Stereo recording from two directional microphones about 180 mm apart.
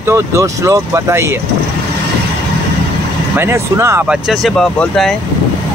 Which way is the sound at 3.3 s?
15° right (ahead or behind).